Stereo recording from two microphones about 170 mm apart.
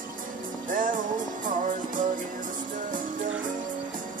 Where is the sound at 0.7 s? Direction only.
50° right (ahead or behind).